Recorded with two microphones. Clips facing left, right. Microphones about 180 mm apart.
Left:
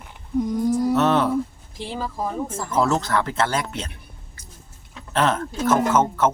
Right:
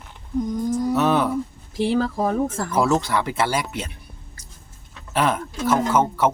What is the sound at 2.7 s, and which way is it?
Speech, 10° right (ahead or behind).